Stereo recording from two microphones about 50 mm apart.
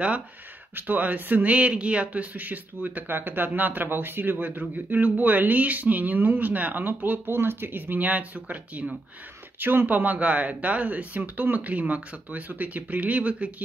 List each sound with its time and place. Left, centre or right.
0.7 s speech: right
9.6 s speech: right